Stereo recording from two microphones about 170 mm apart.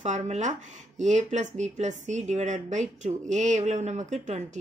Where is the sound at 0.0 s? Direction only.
45° right (ahead or behind).